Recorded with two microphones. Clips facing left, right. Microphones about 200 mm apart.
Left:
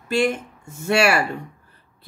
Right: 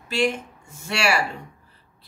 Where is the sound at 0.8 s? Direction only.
55° left (ahead or behind).